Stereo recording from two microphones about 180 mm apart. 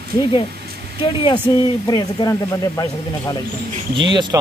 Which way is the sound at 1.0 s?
25° left (ahead or behind).